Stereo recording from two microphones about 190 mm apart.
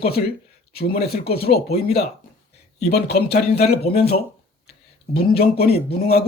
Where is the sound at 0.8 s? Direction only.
55° left (ahead or behind).